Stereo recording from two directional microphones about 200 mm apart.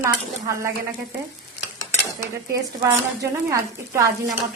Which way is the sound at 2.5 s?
15° right (ahead or behind).